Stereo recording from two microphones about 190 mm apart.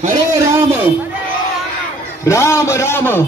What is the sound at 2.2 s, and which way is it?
A man's voice, 15° left (ahead or behind).